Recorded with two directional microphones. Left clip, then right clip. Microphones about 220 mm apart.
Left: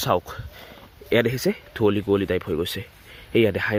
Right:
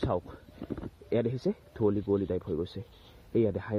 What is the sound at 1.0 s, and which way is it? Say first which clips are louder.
Speech: left 9 dB; 10° left (ahead or behind).